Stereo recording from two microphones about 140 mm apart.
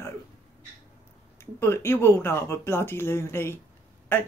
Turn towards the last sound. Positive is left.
turn(degrees=15)  # may be behind; listen again after turning